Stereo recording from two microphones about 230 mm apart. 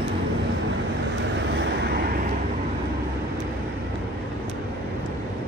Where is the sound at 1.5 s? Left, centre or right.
Right.